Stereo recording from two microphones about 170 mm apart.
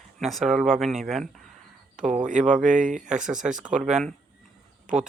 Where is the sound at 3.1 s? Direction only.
5° right (ahead or behind).